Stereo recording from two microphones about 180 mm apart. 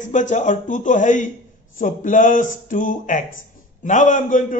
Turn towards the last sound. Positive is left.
turn(degrees=45)  # may be behind; listen again after turning